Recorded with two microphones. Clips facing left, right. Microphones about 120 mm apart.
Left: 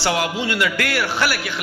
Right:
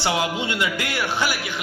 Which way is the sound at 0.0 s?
20° right (ahead or behind).